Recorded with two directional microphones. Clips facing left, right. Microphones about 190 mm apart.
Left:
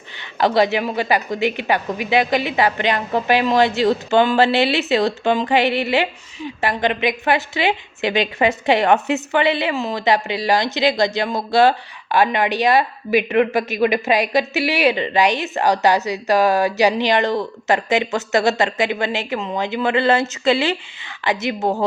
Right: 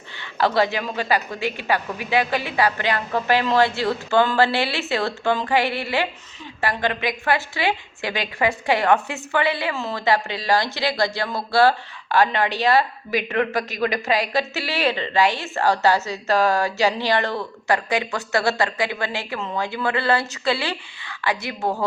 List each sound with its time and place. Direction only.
0.2 s a woman's voice: 15° left (ahead or behind)